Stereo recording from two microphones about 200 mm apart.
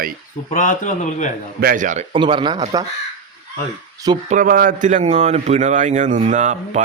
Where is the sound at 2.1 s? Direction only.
25° right (ahead or behind).